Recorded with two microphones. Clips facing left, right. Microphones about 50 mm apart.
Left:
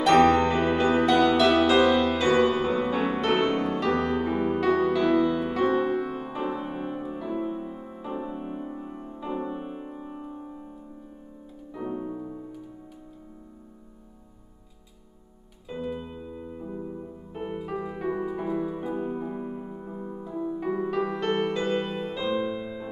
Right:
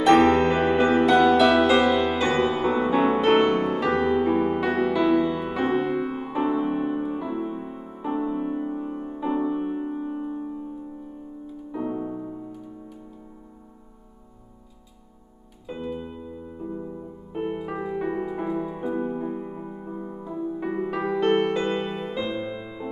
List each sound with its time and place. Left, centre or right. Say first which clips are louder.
0.0 s music: right 2 dB; centre
5.6 s music: right 1 dB; right
7.6 s music: right 4 dB; right
10.0 s piano: right 8 dB; centre
11.7 s music: right 3 dB; centre
16.5 s music: right 3 dB; centre
20.2 s music: right 1 dB; centre
20.6 s music: even; centre